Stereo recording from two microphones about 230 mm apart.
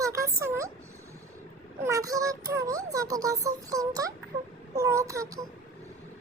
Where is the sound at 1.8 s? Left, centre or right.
Centre.